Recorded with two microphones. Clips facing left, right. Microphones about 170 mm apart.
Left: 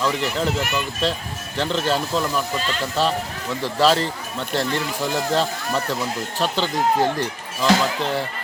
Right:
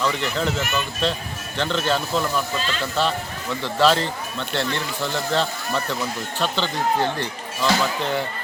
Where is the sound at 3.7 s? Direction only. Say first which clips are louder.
Even; 40° left (ahead or behind).